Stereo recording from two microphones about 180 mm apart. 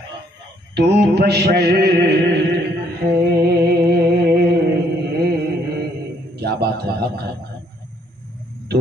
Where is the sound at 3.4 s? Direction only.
60° right (ahead or behind).